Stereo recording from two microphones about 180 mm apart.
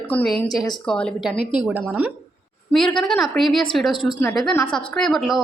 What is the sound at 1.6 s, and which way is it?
Speech, 10° right (ahead or behind).